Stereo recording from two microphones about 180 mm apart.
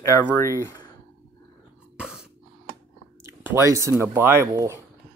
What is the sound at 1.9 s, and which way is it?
Cough, 5° right (ahead or behind).